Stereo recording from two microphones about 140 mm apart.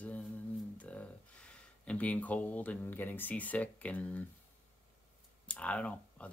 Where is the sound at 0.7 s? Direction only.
10° left (ahead or behind).